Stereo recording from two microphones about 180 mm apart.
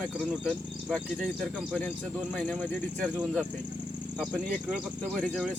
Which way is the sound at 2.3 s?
5° left (ahead or behind).